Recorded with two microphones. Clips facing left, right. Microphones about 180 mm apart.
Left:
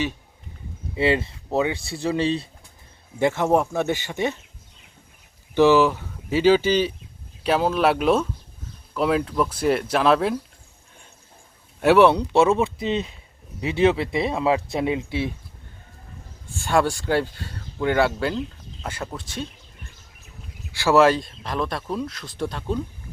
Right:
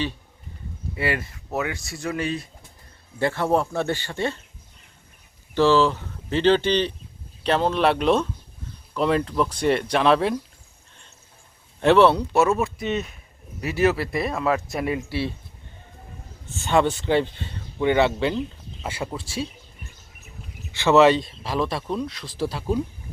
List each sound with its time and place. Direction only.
0.9 s speech: 25° left (ahead or behind)
3.2 s speech: 20° left (ahead or behind)
5.5 s speech: 15° left (ahead or behind)
11.8 s speech: 10° left (ahead or behind)
12.3 s speech: 25° left (ahead or behind)
16.9 s speech: 5° left (ahead or behind)
20.8 s speech: centre (ahead or behind)